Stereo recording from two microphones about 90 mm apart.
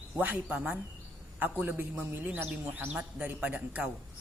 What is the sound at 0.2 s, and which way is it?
A man's voice, 20° right (ahead or behind).